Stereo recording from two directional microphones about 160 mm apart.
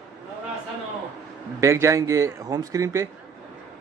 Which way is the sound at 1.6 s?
20° right (ahead or behind).